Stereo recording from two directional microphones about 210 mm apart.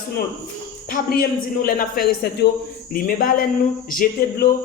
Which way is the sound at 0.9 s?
45° left (ahead or behind).